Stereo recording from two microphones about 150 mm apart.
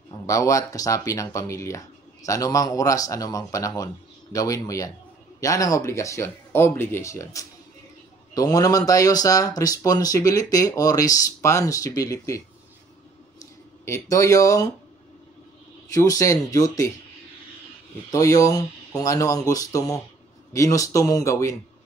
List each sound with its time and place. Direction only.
0.3 s speech: 20° left (ahead or behind)
13.4 s a sound: 20° left (ahead or behind)
15.9 s speech: 20° left (ahead or behind)
18.1 s speech: 20° left (ahead or behind)